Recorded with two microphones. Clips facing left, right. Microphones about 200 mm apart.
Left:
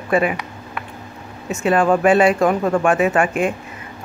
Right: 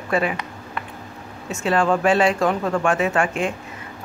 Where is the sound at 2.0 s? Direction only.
55° left (ahead or behind).